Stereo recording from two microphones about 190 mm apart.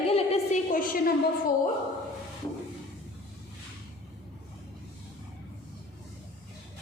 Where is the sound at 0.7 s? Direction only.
45° left (ahead or behind).